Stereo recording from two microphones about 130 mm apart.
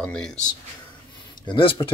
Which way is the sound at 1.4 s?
45° left (ahead or behind).